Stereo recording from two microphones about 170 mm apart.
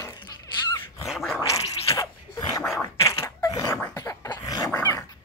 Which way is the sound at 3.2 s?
20° left (ahead or behind).